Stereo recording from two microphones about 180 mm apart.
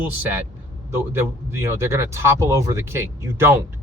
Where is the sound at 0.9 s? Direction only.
15° right (ahead or behind).